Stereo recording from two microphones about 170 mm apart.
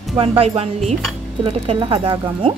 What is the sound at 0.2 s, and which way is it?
Speech, 35° right (ahead or behind).